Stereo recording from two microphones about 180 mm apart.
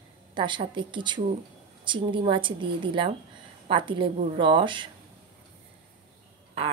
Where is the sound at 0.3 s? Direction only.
25° right (ahead or behind).